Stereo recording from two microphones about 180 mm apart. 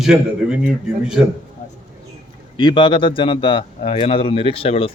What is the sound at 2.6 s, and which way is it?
A man's voice, 25° left (ahead or behind).